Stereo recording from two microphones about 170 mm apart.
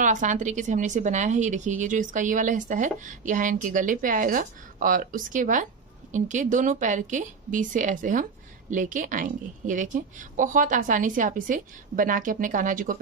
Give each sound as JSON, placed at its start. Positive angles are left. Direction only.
{"t": 0.0, "sound": "a woman's voice", "side_deg": -45}